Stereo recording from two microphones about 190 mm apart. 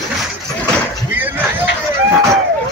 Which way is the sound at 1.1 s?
10° right (ahead or behind).